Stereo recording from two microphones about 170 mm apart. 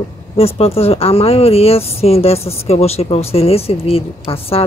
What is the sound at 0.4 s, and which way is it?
Speech, 35° left (ahead or behind).